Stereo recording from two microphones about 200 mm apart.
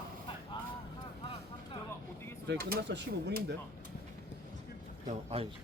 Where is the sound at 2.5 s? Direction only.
50° right (ahead or behind).